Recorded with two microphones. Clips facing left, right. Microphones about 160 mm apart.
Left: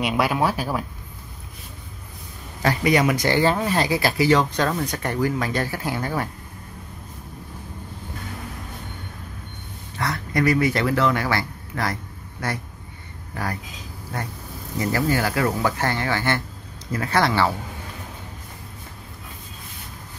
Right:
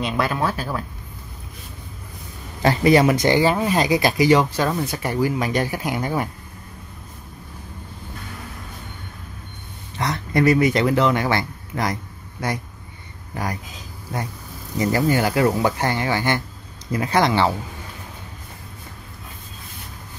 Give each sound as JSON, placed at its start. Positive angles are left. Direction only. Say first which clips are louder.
{"t": 0.0, "sound": "speech", "louder": "left 1 dB", "side_deg": 10}
{"t": 2.6, "sound": "speech", "louder": "right 4 dB", "side_deg": -30}
{"t": 3.3, "sound": "speech", "louder": "right 2 dB", "side_deg": -10}
{"t": 9.9, "sound": "speech", "louder": "right 3 dB", "side_deg": -20}
{"t": 14.8, "sound": "speech", "louder": "right 3 dB", "side_deg": -20}